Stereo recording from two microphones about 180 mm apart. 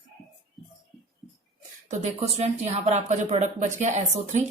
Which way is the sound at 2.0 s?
35° right (ahead or behind).